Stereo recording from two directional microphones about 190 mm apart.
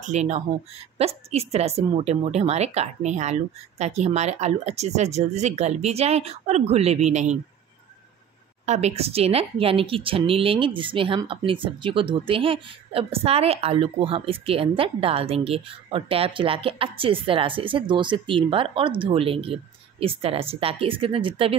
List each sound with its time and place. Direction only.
0.0 s a woman's voice: 35° right (ahead or behind)
8.6 s speech: 35° right (ahead or behind)